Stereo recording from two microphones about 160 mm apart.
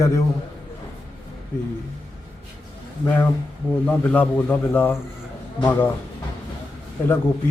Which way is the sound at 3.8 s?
10° left (ahead or behind).